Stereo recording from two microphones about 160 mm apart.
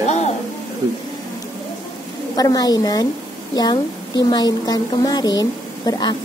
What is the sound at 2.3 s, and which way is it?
A woman's voice, 25° left (ahead or behind).